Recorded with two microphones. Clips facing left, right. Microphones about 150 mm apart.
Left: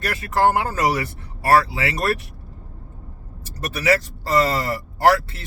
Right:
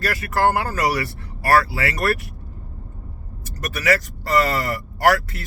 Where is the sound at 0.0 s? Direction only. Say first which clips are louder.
Left 1 dB; 25° left (ahead or behind).